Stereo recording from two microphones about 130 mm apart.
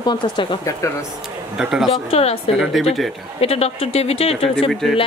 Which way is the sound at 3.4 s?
50° left (ahead or behind).